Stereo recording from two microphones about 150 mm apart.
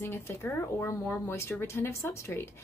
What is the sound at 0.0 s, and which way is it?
Speech, 15° left (ahead or behind).